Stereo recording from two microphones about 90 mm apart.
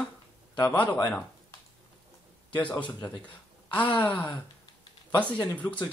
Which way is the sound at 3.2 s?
15° left (ahead or behind).